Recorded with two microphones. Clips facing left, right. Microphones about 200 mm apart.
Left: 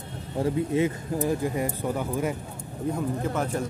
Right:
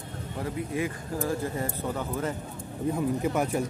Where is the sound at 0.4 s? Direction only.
25° left (ahead or behind).